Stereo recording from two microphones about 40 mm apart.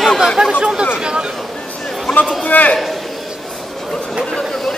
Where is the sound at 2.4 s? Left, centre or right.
Left.